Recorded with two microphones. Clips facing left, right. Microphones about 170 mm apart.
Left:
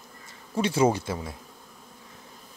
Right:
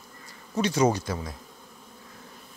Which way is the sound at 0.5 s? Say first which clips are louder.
Even; 30° left (ahead or behind).